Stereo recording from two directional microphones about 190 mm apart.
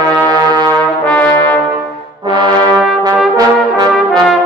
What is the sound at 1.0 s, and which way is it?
Brass instrument, 5° left (ahead or behind).